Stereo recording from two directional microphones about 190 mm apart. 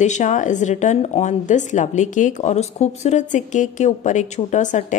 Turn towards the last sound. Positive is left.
turn(degrees=40)  # may be behind; listen again after turning